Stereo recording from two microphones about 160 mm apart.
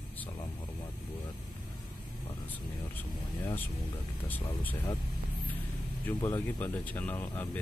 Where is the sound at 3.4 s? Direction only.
10° left (ahead or behind).